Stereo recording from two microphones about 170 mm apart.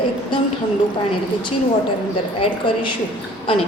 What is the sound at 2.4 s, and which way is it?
Speech, 30° left (ahead or behind).